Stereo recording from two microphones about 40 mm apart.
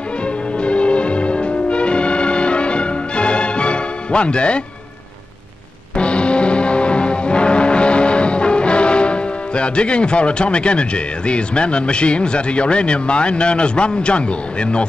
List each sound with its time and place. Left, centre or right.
0.6 s music: left
5.9 s music: left